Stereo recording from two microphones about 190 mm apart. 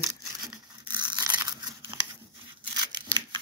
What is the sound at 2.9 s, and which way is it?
Tearing, 20° right (ahead or behind).